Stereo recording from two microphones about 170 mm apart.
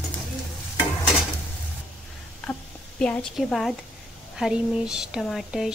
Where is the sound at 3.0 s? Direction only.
5° left (ahead or behind).